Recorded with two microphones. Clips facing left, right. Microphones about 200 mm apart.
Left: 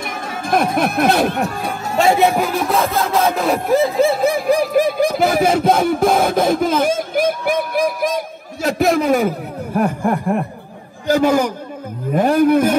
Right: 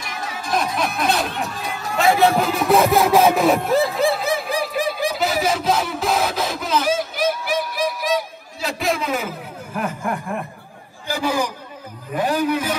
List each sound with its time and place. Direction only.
0.0 s speech: 55° left (ahead or behind)
2.1 s speech: 15° left (ahead or behind)
2.4 s music: centre (ahead or behind)
2.8 s a sound: 15° right (ahead or behind)
3.3 s music: 5° right (ahead or behind)
4.2 s a man's voice: 55° left (ahead or behind)
9.8 s speech: 35° left (ahead or behind)
11.1 s a man's voice: 45° left (ahead or behind)